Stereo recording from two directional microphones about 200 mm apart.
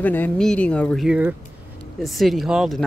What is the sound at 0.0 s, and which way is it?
Speech, 10° left (ahead or behind).